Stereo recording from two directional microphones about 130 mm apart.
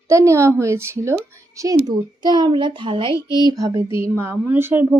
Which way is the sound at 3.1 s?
25° left (ahead or behind).